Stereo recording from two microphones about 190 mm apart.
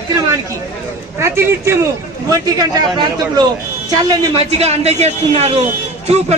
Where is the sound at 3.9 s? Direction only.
20° right (ahead or behind).